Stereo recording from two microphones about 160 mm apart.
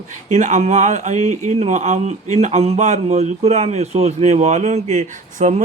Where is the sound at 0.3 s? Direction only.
45° right (ahead or behind).